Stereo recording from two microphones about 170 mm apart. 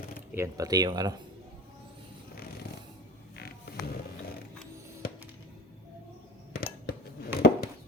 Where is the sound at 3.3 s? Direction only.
65° left (ahead or behind).